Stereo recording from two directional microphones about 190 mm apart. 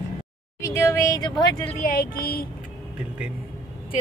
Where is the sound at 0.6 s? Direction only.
15° left (ahead or behind).